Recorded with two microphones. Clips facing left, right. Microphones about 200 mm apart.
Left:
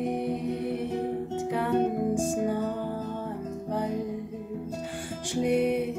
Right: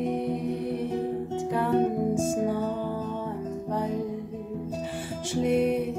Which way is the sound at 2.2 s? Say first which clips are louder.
Right 1 dB; centre (ahead or behind).